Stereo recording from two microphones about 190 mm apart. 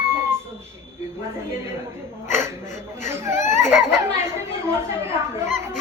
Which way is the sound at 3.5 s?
15° right (ahead or behind).